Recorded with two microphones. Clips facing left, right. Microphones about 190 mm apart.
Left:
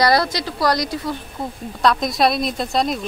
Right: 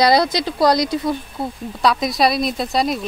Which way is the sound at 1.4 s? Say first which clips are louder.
Left 2 dB; 10° right (ahead or behind).